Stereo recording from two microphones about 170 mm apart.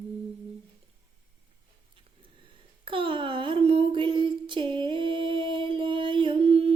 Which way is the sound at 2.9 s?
30° right (ahead or behind).